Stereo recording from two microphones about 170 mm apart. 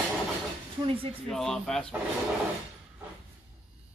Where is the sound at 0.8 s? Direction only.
35° right (ahead or behind).